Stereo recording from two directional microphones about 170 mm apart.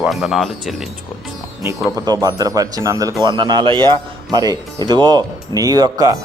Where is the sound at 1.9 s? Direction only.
20° right (ahead or behind).